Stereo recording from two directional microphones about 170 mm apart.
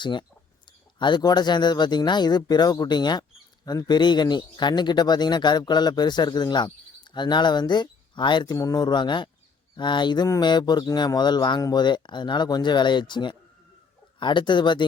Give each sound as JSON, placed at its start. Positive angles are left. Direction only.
{"t": 0.0, "sound": "a man's voice", "side_deg": 30}